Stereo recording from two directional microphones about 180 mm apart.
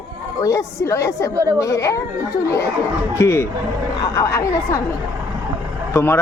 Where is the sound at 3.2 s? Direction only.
15° left (ahead or behind).